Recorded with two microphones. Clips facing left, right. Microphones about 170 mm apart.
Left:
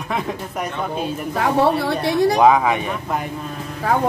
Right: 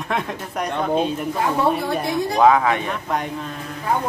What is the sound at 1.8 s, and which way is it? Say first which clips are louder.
Speech: left 4 dB; 75° left (ahead or behind).